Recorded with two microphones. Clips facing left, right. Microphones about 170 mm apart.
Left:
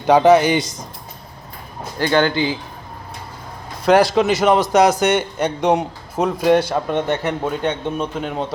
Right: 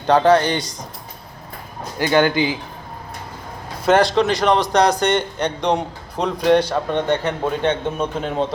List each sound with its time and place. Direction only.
0.1 s a man's voice: 10° left (ahead or behind)
2.0 s speech: 15° right (ahead or behind)
3.8 s a man's voice: 5° left (ahead or behind)